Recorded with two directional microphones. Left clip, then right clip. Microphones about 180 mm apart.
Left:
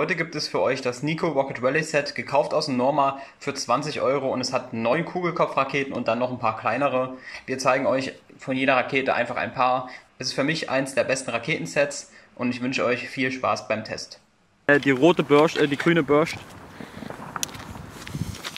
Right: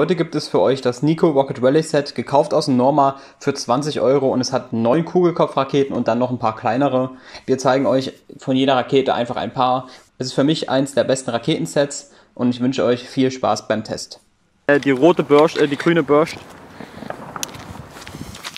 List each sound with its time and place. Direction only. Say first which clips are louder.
0.0 s speech: right 6 dB; 20° right (ahead or behind)
14.7 s speech: right 4 dB; centre (ahead or behind)
17.3 s walk: right 3 dB; 5° left (ahead or behind)